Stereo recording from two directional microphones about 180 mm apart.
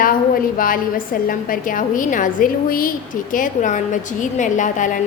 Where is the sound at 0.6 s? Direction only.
50° left (ahead or behind).